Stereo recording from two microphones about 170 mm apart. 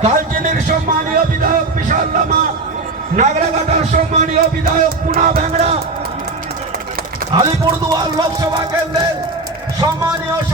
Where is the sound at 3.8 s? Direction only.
45° right (ahead or behind).